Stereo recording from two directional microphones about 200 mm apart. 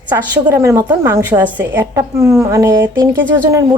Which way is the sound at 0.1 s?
20° right (ahead or behind).